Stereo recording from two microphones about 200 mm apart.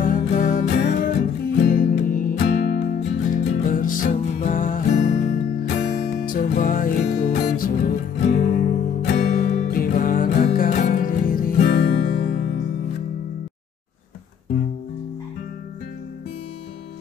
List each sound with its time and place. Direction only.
0.0 s music: 40° left (ahead or behind)
0.8 s music: 50° left (ahead or behind)